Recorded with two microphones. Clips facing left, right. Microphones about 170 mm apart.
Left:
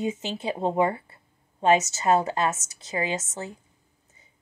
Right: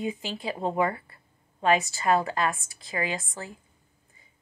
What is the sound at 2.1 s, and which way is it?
Speech, 20° left (ahead or behind).